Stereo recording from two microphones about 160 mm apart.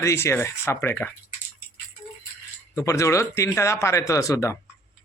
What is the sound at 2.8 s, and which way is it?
Speech, 20° left (ahead or behind).